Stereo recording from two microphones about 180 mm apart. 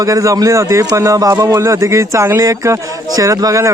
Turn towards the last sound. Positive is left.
turn(degrees=-15)  # may be behind; listen again after turning